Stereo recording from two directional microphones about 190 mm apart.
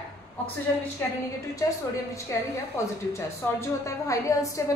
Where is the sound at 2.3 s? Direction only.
15° left (ahead or behind).